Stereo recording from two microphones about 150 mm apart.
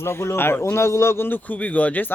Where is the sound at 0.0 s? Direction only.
15° left (ahead or behind).